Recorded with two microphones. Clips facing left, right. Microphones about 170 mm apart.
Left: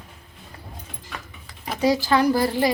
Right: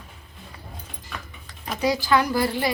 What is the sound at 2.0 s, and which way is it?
Speech, 35° left (ahead or behind).